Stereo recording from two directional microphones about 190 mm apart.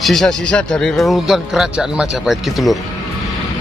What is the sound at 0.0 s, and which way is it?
Speech, centre (ahead or behind).